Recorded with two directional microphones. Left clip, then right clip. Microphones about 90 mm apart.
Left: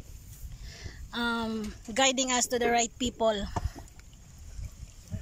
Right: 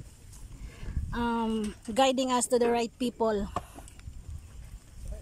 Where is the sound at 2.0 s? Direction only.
25° right (ahead or behind).